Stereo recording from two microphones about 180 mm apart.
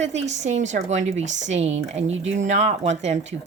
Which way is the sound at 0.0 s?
40° right (ahead or behind).